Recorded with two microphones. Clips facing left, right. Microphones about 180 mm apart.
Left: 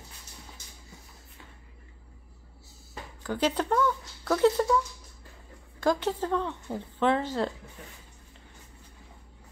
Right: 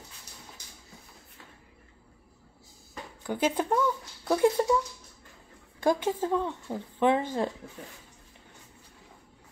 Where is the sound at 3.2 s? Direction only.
10° right (ahead or behind).